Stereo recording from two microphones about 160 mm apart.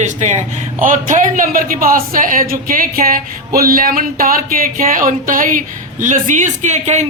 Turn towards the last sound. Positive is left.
turn(degrees=-45)  # may be behind; listen again after turning